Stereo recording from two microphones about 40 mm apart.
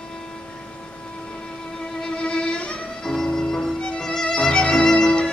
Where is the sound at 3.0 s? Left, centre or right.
Centre.